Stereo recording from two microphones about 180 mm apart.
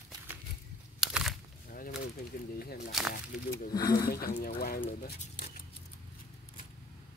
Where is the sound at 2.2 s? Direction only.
55° left (ahead or behind).